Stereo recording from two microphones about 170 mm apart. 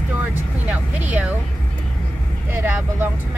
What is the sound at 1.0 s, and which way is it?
Speech, 10° right (ahead or behind).